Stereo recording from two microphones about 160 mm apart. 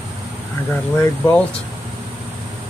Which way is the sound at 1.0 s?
15° left (ahead or behind).